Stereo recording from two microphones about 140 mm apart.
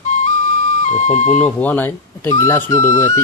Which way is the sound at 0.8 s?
60° left (ahead or behind).